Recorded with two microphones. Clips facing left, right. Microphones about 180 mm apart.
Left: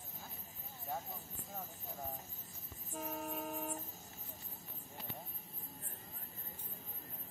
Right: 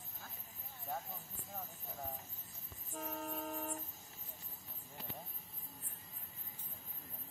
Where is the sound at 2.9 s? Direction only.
5° left (ahead or behind).